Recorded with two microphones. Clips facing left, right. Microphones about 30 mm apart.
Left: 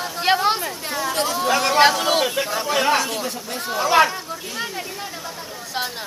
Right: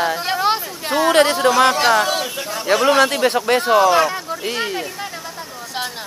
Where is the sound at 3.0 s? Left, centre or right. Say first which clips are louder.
Right 10 dB; right.